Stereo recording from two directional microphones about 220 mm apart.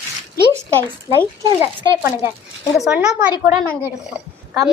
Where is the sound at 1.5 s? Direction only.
20° right (ahead or behind).